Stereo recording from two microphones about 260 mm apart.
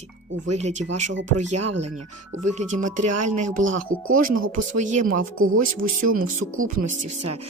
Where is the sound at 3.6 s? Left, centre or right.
Right.